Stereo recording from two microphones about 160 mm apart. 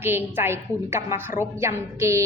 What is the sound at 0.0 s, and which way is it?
A woman's voice, 15° right (ahead or behind).